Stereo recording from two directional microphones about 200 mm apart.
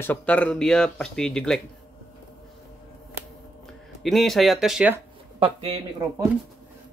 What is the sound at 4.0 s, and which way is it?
Speech, centre (ahead or behind).